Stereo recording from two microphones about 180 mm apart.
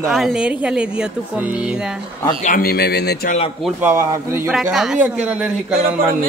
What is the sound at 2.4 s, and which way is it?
Speech, 50° left (ahead or behind).